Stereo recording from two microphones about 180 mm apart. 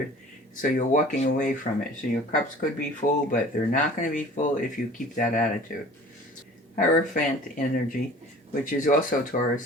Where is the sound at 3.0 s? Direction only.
45° left (ahead or behind).